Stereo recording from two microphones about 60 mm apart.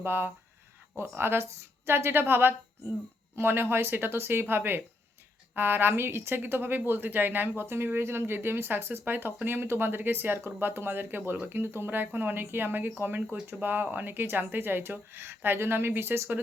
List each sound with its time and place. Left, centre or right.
0.0 s a woman's voice: right